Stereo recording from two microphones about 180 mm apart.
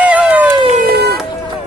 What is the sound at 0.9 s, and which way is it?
Vehicle, 65° right (ahead or behind).